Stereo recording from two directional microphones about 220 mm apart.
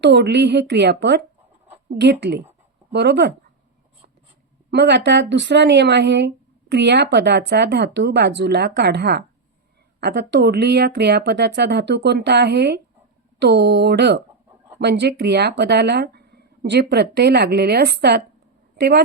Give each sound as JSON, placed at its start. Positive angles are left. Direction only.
{"t": 0.0, "sound": "a woman's voice", "side_deg": -50}
{"t": 4.7, "sound": "speech", "side_deg": -50}